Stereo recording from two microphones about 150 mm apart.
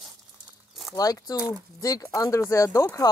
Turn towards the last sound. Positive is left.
turn(degrees=20)  # may be behind; listen again after turning